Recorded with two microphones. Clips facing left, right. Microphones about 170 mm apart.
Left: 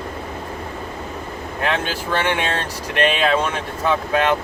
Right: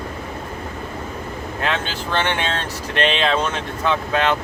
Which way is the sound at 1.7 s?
10° left (ahead or behind).